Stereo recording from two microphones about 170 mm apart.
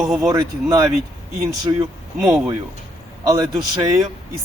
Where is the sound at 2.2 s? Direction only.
5° right (ahead or behind).